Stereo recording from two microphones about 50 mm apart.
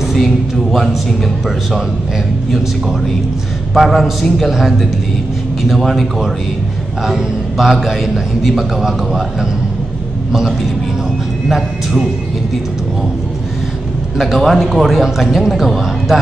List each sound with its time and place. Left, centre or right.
0.1 s a man's voice: centre
3.7 s a man's voice: centre
11.4 s a man's voice: centre
14.1 s a man's voice: centre